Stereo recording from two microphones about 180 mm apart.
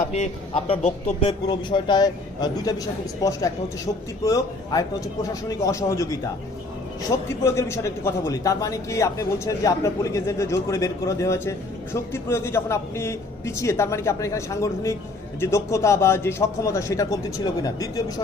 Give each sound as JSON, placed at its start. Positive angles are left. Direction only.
{"t": 0.1, "sound": "a man's voice", "side_deg": 35}
{"t": 1.5, "sound": "a man's voice", "side_deg": 25}